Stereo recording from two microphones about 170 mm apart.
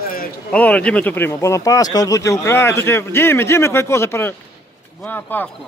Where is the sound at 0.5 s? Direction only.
10° left (ahead or behind).